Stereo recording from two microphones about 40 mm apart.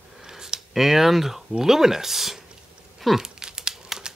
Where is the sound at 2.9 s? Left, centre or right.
Centre.